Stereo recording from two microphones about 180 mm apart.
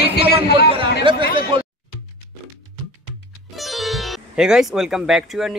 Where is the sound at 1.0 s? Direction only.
30° right (ahead or behind).